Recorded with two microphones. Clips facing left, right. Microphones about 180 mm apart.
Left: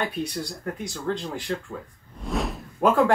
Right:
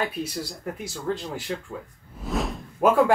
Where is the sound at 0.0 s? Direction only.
5° right (ahead or behind).